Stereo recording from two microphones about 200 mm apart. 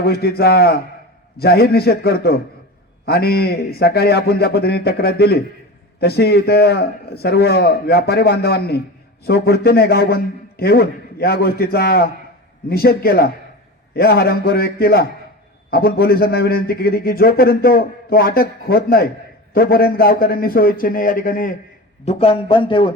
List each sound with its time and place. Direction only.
0.0 s a man's voice: 50° left (ahead or behind)
22.0 s a man's voice: 30° left (ahead or behind)